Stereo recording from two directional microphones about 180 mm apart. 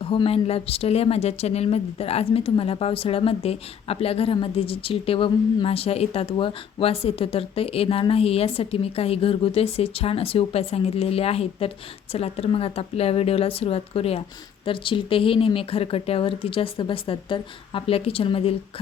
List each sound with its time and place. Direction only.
0.0 s speech: 30° left (ahead or behind)